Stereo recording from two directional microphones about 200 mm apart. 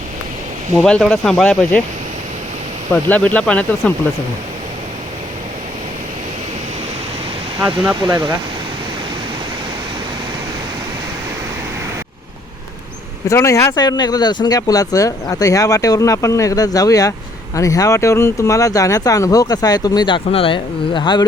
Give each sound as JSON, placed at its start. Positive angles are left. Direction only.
{"t": 0.8, "sound": "speech", "side_deg": 5}
{"t": 2.9, "sound": "speech", "side_deg": 5}
{"t": 7.6, "sound": "speech", "side_deg": -10}
{"t": 13.2, "sound": "speech", "side_deg": 15}